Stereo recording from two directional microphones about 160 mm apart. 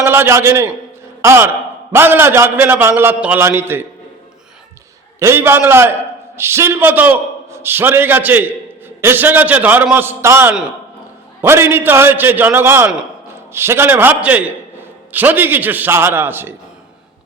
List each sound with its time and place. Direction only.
0.0 s a man's voice: 15° right (ahead or behind)
5.2 s a man's voice: 15° right (ahead or behind)